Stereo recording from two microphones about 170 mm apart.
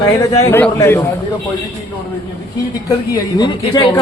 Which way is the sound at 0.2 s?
15° left (ahead or behind).